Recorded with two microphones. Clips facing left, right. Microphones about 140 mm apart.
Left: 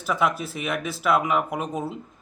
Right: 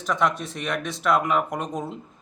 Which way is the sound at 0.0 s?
5° left (ahead or behind).